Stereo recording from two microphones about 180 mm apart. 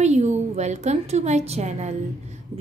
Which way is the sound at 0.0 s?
40° right (ahead or behind).